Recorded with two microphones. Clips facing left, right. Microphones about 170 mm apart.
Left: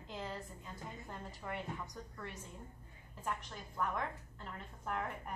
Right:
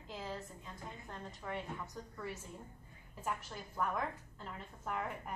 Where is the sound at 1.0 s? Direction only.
5° left (ahead or behind).